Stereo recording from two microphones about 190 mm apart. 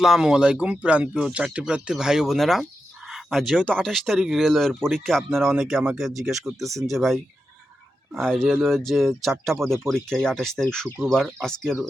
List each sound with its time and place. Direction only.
0.0 s speech: 5° right (ahead or behind)
6.7 s speech: 15° right (ahead or behind)
6.9 s speech: centre (ahead or behind)
8.2 s speech: centre (ahead or behind)